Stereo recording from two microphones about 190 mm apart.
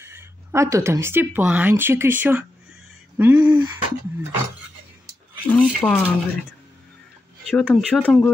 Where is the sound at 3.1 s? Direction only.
10° right (ahead or behind).